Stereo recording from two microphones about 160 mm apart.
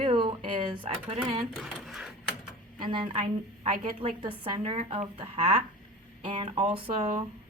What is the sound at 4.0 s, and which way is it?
A woman's voice, 35° right (ahead or behind).